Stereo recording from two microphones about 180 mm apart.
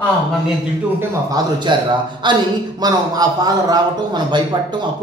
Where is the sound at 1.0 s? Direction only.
20° right (ahead or behind).